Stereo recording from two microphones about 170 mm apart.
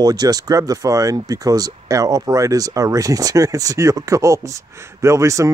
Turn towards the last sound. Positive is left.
turn(degrees=-15)  # may be behind; listen again after turning